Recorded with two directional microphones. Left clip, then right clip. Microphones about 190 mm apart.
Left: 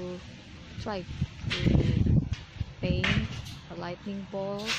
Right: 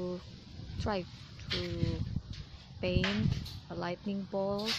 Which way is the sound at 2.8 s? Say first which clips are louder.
Left 3 dB; centre (ahead or behind).